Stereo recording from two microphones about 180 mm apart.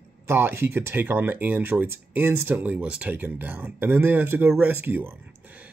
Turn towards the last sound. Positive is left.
turn(degrees=-10)  # may be behind; listen again after turning